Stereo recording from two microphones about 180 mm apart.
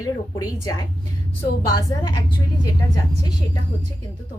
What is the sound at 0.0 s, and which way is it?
Speech, 20° left (ahead or behind).